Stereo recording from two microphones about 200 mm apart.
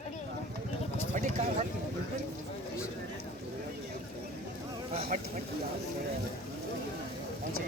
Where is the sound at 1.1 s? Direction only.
40° right (ahead or behind).